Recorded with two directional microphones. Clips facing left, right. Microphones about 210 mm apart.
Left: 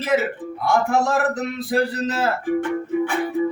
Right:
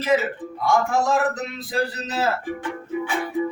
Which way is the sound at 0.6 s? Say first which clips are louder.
Left 1 dB; 60° left (ahead or behind).